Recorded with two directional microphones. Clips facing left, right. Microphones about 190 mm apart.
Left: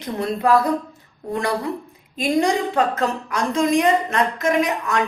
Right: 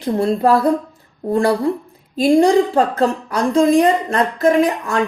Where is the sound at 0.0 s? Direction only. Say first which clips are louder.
Right 6 dB; 30° right (ahead or behind).